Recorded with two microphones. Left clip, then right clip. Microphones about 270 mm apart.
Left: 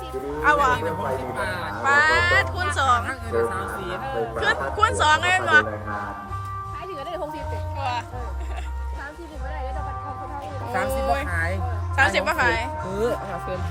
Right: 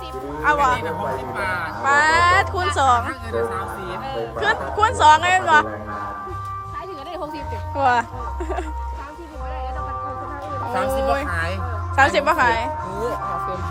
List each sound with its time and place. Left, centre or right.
0.4 s speech: centre
1.8 s speech: centre
4.4 s speech: centre
7.8 s speech: right
10.7 s speech: centre